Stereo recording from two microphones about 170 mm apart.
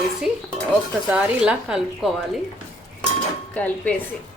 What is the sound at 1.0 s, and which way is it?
A woman's voice, 10° right (ahead or behind).